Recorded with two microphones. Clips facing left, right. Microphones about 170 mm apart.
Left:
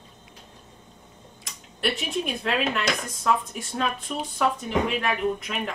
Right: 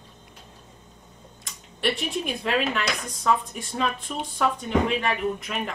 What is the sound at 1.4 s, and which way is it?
Speech, centre (ahead or behind).